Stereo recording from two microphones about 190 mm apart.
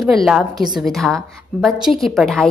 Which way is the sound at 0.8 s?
Centre (ahead or behind).